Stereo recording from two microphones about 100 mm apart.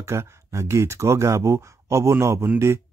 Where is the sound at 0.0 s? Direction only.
30° right (ahead or behind).